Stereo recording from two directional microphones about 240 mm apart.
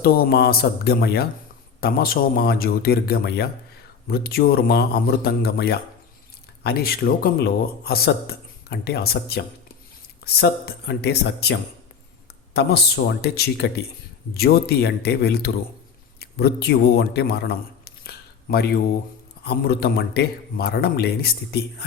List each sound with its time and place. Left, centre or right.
0.0 s speech: left
13.2 s a man's voice: left